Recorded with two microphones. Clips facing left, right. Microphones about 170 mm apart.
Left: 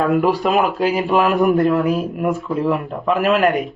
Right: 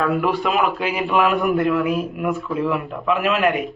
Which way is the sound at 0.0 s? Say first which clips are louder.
Left 4 dB; 40° left (ahead or behind).